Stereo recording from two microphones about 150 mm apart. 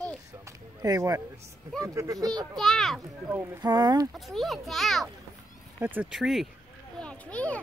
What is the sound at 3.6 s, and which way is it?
Speech, 25° right (ahead or behind).